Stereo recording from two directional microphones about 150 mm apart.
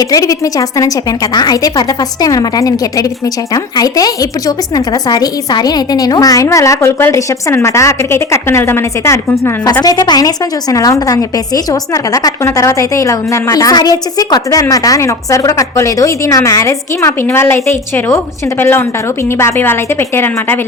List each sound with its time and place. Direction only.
0.0 s a woman's voice: 25° left (ahead or behind)